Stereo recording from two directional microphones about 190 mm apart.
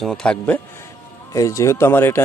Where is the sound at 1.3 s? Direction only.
15° left (ahead or behind).